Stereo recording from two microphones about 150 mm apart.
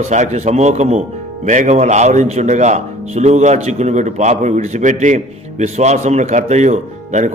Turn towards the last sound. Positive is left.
turn(degrees=-55)  # may be behind; listen again after turning